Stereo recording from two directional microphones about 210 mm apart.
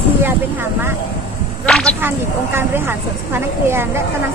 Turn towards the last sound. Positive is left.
turn(degrees=-10)  # may be behind; listen again after turning